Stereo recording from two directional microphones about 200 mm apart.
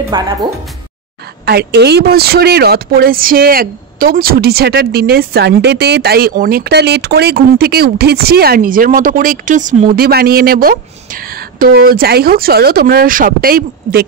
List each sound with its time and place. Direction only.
0.1 s speech: 25° right (ahead or behind)
1.4 s speech: 55° right (ahead or behind)